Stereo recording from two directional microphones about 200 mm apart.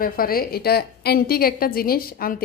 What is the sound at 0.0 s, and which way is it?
A woman's voice, 50° left (ahead or behind).